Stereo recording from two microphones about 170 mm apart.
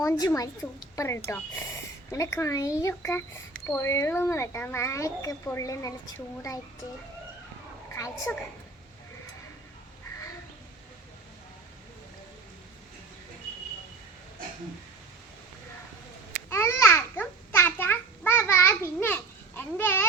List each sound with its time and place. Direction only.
0.0 s speech: 15° left (ahead or behind)
7.9 s speech: 20° left (ahead or behind)
16.5 s babbling: 15° left (ahead or behind)